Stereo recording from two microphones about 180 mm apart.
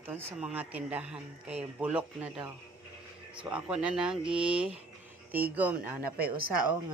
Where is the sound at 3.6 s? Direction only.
5° right (ahead or behind).